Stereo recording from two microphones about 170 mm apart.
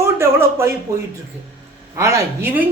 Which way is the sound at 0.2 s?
15° right (ahead or behind).